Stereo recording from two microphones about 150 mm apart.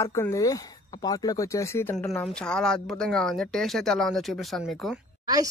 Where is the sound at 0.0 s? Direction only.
20° left (ahead or behind).